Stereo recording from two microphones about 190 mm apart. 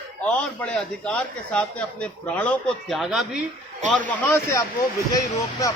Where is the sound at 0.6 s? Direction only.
5° left (ahead or behind).